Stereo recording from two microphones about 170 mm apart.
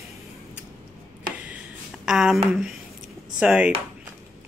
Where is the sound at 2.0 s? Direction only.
Centre (ahead or behind).